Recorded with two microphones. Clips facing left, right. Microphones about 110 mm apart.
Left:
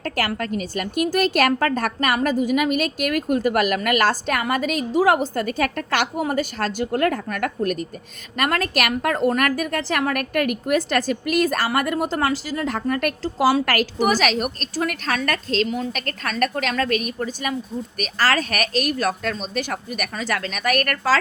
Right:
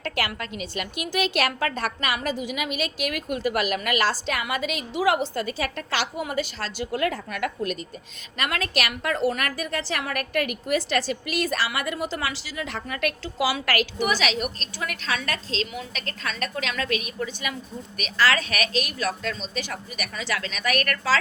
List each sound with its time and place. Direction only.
0.0 s a woman's voice: 45° left (ahead or behind)